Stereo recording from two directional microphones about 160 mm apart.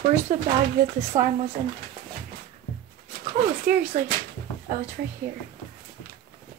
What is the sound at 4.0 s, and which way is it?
Speech, 55° right (ahead or behind).